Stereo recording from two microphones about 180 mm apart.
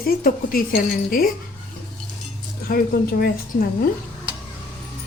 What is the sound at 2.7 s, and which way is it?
Speech, 55° left (ahead or behind).